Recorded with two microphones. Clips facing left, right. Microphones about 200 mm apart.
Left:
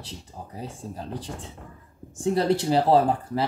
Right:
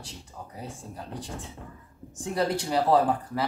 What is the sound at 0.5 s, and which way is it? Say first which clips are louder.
Speech: left 4 dB; 30° left (ahead or behind).